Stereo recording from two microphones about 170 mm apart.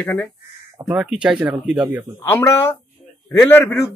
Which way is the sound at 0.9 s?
5° right (ahead or behind).